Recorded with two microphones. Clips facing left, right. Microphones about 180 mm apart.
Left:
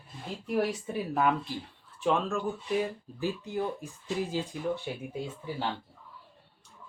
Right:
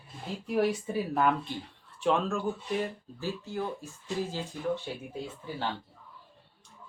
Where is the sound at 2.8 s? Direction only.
15° left (ahead or behind).